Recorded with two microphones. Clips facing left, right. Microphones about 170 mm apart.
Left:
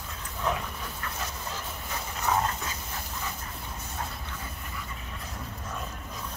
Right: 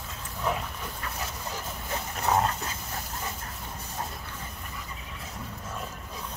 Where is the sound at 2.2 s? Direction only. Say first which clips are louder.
Right 2 dB; 35° right (ahead or behind).